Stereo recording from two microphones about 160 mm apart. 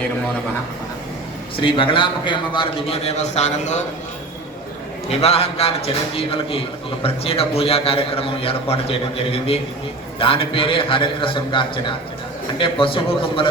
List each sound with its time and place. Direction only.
1.5 s a man's voice: 35° left (ahead or behind)
5.0 s a man's voice: 40° left (ahead or behind)